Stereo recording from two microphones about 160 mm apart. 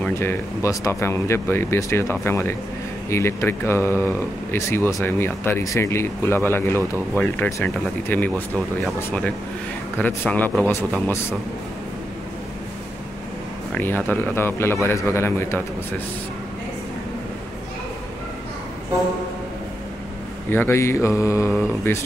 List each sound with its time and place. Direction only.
0.0 s speech: 15° left (ahead or behind)
13.7 s speech: 10° left (ahead or behind)
20.4 s speech: 15° left (ahead or behind)